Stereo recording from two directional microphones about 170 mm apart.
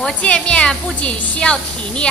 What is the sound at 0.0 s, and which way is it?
A woman's voice, 5° left (ahead or behind).